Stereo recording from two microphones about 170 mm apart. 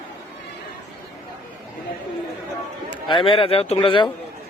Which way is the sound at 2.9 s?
30° left (ahead or behind).